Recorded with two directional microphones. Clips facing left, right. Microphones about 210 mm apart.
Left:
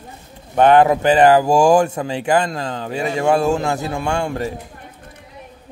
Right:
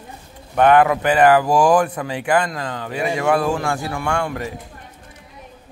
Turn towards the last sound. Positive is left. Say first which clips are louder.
# left 2 dB
turn(degrees=30)  # may be behind; listen again after turning